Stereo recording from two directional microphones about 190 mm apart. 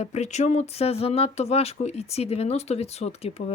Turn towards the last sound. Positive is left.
turn(degrees=35)  # may be behind; listen again after turning